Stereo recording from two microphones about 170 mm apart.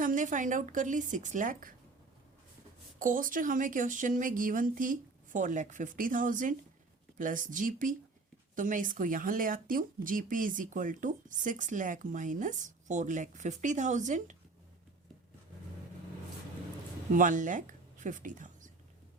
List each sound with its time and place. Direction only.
0.0 s speech: 50° right (ahead or behind)
3.0 s speech: 50° right (ahead or behind)
17.2 s speech: 50° right (ahead or behind)